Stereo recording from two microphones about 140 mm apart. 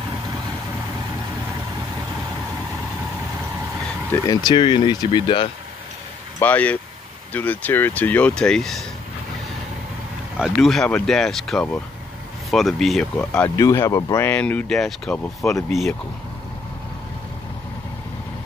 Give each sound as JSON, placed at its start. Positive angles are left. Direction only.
{"t": 4.3, "sound": "speech", "side_deg": 30}
{"t": 6.4, "sound": "speech", "side_deg": 10}
{"t": 10.4, "sound": "speech", "side_deg": 0}
{"t": 13.6, "sound": "speech", "side_deg": 25}
{"t": 14.3, "sound": "speech", "side_deg": 10}